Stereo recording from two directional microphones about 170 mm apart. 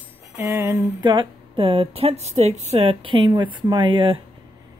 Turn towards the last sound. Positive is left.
turn(degrees=-30)  # may be behind; listen again after turning